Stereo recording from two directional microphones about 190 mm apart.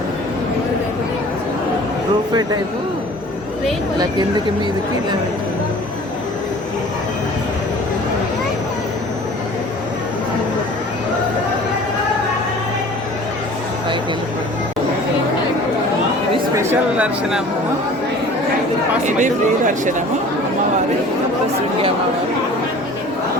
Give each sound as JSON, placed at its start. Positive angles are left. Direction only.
{"t": 2.3, "sound": "speech", "side_deg": -20}
{"t": 16.6, "sound": "a woman's voice", "side_deg": -15}
{"t": 19.0, "sound": "speech", "side_deg": -40}